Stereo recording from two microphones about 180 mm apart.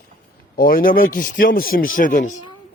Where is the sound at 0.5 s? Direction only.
55° left (ahead or behind).